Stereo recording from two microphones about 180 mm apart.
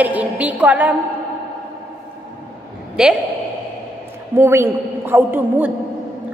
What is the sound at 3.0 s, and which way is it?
Speech, 5° right (ahead or behind).